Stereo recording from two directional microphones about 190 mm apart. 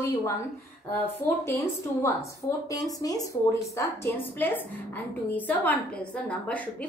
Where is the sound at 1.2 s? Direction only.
15° left (ahead or behind).